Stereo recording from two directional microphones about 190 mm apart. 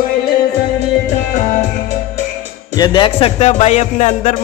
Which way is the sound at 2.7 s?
20° left (ahead or behind).